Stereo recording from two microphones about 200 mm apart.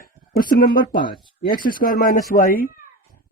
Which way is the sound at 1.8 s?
45° left (ahead or behind).